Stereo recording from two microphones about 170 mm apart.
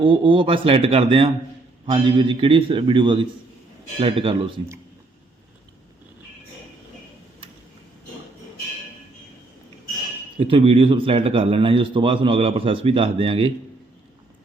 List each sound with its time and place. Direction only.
0.0 s a man's voice: 30° right (ahead or behind)
10.3 s speech: 30° right (ahead or behind)